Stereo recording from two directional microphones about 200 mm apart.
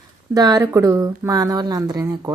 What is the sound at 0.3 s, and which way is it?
A woman's voice, 20° right (ahead or behind).